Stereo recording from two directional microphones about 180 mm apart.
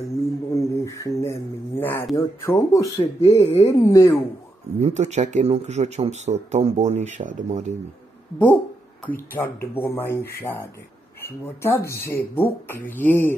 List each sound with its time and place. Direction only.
0.1 s a sound: 15° left (ahead or behind)
2.1 s speech: 20° left (ahead or behind)
3.2 s speech: 35° left (ahead or behind)
3.7 s speech: 20° left (ahead or behind)
4.7 s speech: 40° right (ahead or behind)
9.0 s speech: 10° left (ahead or behind)